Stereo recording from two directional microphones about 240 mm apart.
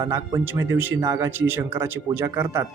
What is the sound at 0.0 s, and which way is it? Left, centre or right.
Speech, centre.